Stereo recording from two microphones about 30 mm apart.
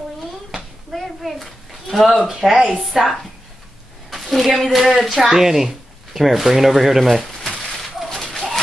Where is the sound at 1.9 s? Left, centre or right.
Centre.